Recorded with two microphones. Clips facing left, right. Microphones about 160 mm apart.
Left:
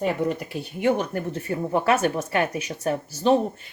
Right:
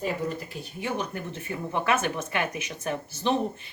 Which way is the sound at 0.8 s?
60° left (ahead or behind).